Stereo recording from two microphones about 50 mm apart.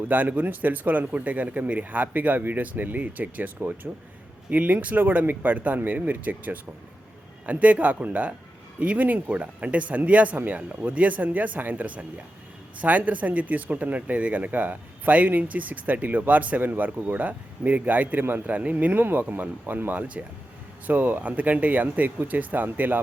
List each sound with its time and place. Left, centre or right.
0.1 s speech: right
18.4 s speech: right
20.8 s speech: right